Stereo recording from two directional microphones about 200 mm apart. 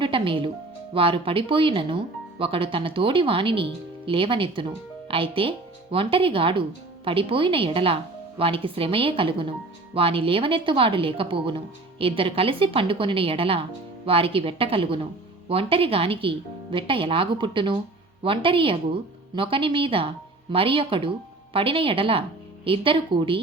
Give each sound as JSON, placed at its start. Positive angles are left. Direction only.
{"t": 0.0, "sound": "speech", "side_deg": -25}